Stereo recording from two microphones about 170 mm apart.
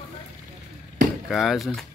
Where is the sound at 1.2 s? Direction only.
Centre (ahead or behind).